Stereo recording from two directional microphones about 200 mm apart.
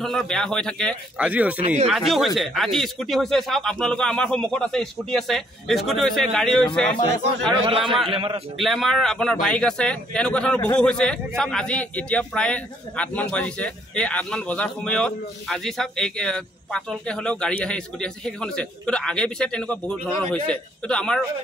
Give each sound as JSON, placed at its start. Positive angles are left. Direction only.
{"t": 0.0, "sound": "speech", "side_deg": 0}
{"t": 1.1, "sound": "speech", "side_deg": -5}
{"t": 7.5, "sound": "a man's voice", "side_deg": -25}
{"t": 8.5, "sound": "speech", "side_deg": 0}